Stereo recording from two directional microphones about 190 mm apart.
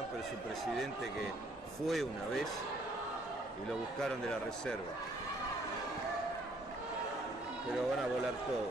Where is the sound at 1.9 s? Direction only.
Centre (ahead or behind).